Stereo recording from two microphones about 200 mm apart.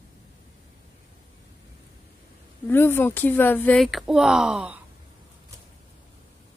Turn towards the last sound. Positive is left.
turn(degrees=-5)  # may be behind; listen again after turning